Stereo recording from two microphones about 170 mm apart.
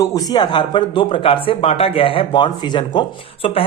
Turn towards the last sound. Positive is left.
turn(degrees=30)  # may be behind; listen again after turning